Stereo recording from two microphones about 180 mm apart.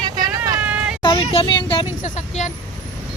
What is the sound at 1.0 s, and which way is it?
Speech, 30° left (ahead or behind).